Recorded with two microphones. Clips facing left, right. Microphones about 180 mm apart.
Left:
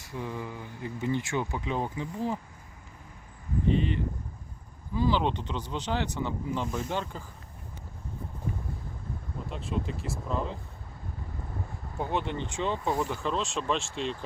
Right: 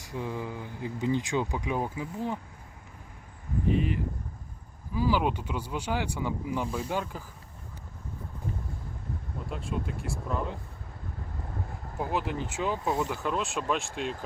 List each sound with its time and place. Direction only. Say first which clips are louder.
0.0 s speech: right 2 dB; 15° right (ahead or behind)
3.7 s speech: left 1 dB; 5° right (ahead or behind)
9.5 s speech: left 1 dB; centre (ahead or behind)
11.9 s speech: even; 5° right (ahead or behind)